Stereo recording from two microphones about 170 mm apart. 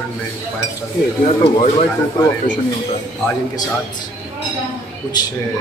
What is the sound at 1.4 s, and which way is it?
Speech, 40° left (ahead or behind).